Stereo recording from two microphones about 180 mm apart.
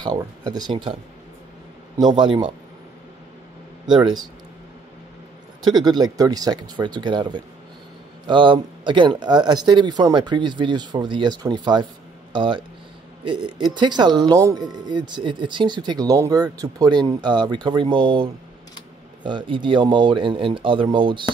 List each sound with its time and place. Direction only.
0.0 s speech: 20° right (ahead or behind)
2.0 s speech: 25° right (ahead or behind)
3.8 s speech: 25° right (ahead or behind)
5.8 s speech: 20° right (ahead or behind)